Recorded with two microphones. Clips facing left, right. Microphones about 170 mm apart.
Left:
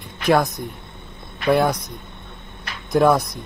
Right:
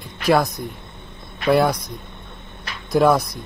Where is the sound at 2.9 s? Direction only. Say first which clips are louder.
Even; centre (ahead or behind).